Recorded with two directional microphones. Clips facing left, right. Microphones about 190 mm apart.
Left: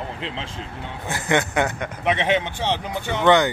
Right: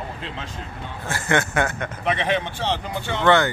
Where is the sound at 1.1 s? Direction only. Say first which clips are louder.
Left 1 dB; 15° left (ahead or behind).